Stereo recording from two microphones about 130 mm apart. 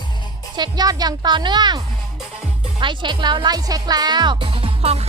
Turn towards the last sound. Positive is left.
turn(degrees=-50)  # may be behind; listen again after turning